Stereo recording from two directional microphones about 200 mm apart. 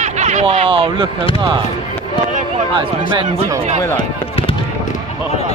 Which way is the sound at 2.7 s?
25° right (ahead or behind).